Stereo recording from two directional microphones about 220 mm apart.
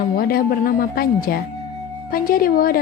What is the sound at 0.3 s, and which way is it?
A woman's voice, 40° left (ahead or behind).